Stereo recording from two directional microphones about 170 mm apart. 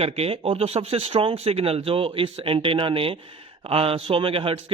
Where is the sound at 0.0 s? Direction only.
35° right (ahead or behind).